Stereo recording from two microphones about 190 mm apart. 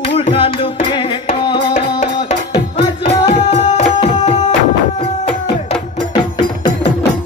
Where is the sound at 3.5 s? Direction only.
35° left (ahead or behind).